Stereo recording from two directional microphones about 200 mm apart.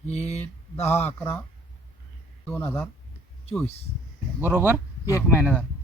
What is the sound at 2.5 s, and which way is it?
Speech, 10° left (ahead or behind).